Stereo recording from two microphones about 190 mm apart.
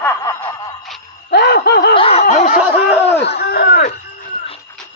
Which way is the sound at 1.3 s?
60° left (ahead or behind).